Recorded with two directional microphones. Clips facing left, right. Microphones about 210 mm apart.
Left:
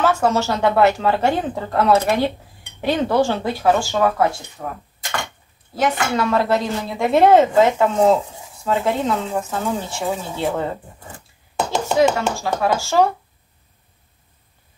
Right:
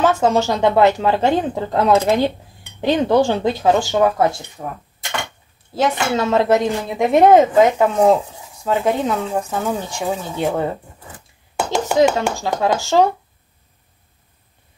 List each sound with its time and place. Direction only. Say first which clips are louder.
0.0 s a woman's voice: right 2 dB; 20° right (ahead or behind)
5.8 s a woman's voice: right 2 dB; 25° right (ahead or behind)